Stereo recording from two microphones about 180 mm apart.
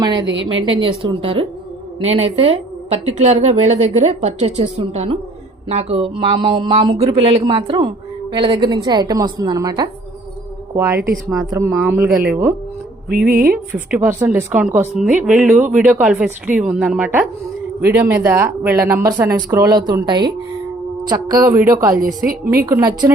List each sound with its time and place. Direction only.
0.6 s a woman's voice: 30° right (ahead or behind); by 12.5 s 10° right (ahead or behind)
13.1 s a sound: 55° right (ahead or behind)
13.9 s a woman's voice: 15° right (ahead or behind)